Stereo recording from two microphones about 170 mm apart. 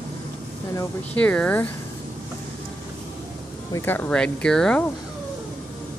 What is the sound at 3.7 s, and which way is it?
Speech, 15° left (ahead or behind).